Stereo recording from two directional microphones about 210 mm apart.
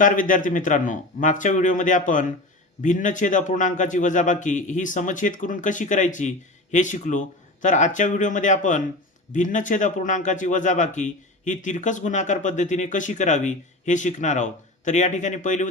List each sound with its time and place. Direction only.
0.0 s a man's voice: 40° left (ahead or behind)